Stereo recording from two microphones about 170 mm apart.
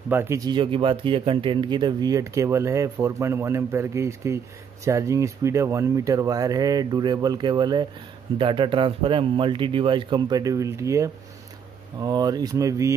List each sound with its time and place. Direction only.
0.1 s speech: 15° right (ahead or behind)